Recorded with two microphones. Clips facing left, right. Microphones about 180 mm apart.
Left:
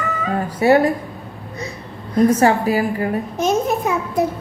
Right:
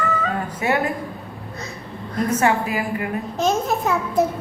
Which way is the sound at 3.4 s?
15° left (ahead or behind).